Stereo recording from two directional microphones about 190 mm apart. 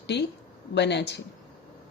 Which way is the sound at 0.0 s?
65° left (ahead or behind).